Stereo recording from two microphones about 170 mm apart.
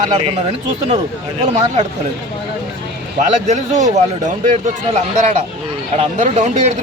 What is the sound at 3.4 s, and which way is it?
A man's voice, 45° right (ahead or behind).